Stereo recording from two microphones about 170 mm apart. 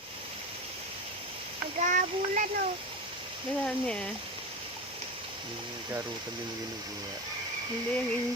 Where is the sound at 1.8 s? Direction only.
50° right (ahead or behind).